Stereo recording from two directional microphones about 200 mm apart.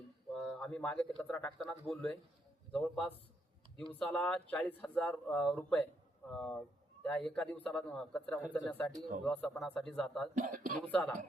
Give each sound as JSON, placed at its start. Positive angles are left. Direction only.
{"t": 0.3, "sound": "a man's voice", "side_deg": 5}
{"t": 10.3, "sound": "speech", "side_deg": -40}
{"t": 10.8, "sound": "speech", "side_deg": 5}